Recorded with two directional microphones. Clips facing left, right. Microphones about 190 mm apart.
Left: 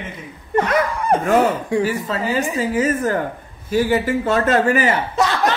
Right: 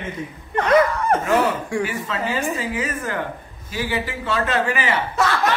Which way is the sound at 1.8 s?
40° left (ahead or behind).